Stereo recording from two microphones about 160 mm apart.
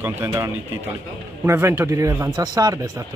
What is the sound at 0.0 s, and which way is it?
Speech, 15° right (ahead or behind).